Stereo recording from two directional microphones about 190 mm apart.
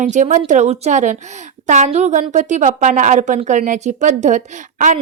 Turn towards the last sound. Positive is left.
turn(degrees=-40)  # may be behind; listen again after turning